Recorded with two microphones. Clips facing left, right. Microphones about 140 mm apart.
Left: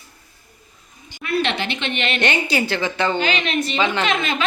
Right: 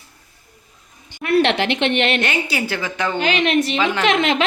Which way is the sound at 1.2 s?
75° right (ahead or behind).